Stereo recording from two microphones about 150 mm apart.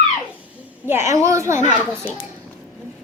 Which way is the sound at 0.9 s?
20° right (ahead or behind).